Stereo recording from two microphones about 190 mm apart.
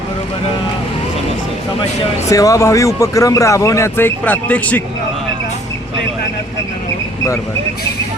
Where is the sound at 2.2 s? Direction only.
15° left (ahead or behind).